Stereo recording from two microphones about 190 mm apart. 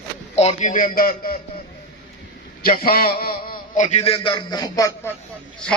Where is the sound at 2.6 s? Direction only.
50° left (ahead or behind); by 5.1 s 20° left (ahead or behind).